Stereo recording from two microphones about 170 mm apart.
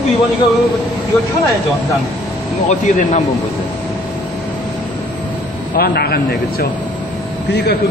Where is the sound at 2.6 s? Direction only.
45° left (ahead or behind).